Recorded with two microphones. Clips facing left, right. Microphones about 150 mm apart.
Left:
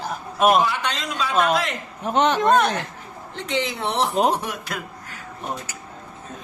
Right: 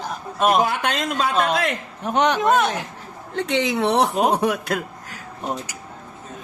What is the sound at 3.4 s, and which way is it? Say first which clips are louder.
Speech: right 5 dB; 65° right (ahead or behind).